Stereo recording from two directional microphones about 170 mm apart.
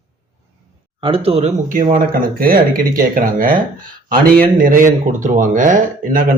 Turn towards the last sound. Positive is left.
turn(degrees=-55)  # may be behind; listen again after turning